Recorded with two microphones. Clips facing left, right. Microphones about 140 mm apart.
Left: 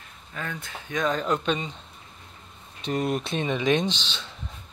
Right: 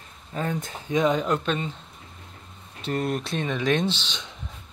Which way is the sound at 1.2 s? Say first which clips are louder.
Even; 5° right (ahead or behind).